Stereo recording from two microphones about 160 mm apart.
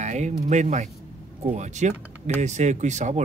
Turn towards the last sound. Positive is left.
turn(degrees=-45)  # may be behind; listen again after turning